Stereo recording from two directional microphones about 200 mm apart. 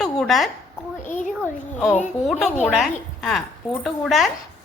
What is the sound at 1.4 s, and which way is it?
Speech, 5° left (ahead or behind).